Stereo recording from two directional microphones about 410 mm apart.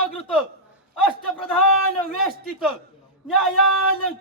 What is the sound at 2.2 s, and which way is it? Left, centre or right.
Speech, centre.